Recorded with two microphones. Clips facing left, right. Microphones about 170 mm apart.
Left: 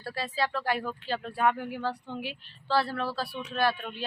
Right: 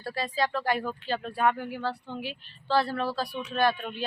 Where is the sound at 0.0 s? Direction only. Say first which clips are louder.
Right 2 dB; 5° left (ahead or behind).